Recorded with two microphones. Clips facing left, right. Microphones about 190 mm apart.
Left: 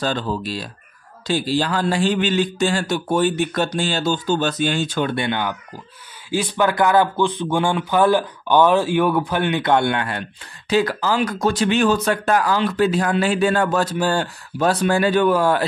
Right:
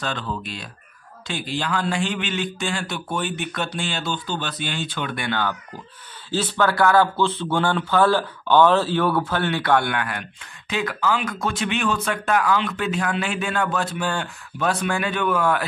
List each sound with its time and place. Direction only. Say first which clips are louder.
0.0 s speech: left 6 dB; 35° left (ahead or behind)
5.1 s speech: left 3 dB; 20° left (ahead or behind)